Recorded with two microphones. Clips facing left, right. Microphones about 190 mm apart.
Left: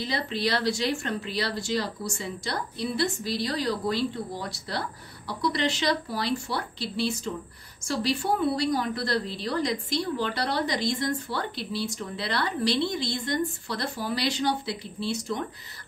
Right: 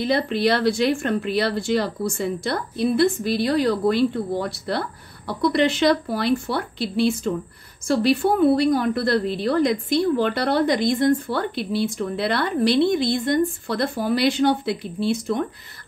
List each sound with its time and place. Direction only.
0.0 s a woman's voice: 55° right (ahead or behind)